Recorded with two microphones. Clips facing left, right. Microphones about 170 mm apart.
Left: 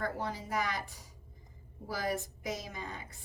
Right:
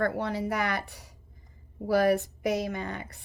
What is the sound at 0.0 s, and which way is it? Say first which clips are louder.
A woman's voice: right 8 dB; 70° right (ahead or behind).